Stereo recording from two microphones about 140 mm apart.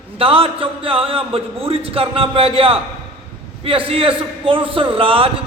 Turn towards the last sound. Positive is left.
turn(degrees=-40)  # may be behind; listen again after turning